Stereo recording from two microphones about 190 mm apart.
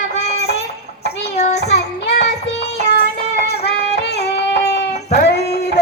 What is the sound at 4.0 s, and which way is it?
Music, 60° left (ahead or behind).